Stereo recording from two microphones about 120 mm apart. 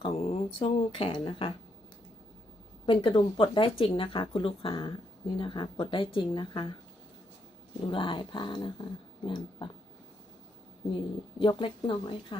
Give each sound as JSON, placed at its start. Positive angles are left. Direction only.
{"t": 0.0, "sound": "speech", "side_deg": 55}
{"t": 2.8, "sound": "speech", "side_deg": 45}
{"t": 7.9, "sound": "speech", "side_deg": 45}
{"t": 11.3, "sound": "speech", "side_deg": 45}